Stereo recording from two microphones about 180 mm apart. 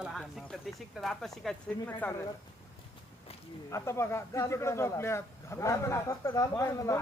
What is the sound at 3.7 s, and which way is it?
Speech, 15° left (ahead or behind).